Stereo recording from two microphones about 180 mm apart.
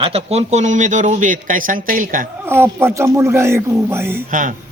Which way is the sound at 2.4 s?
15° right (ahead or behind).